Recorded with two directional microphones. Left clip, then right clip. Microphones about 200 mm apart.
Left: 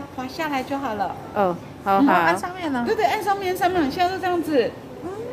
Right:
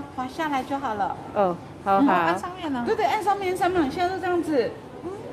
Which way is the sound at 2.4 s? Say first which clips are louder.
Left 4 dB; 40° left (ahead or behind).